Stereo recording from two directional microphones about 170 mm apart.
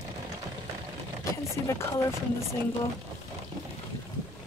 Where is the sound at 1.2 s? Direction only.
15° left (ahead or behind).